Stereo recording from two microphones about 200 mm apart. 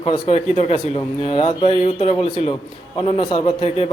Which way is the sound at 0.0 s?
30° left (ahead or behind).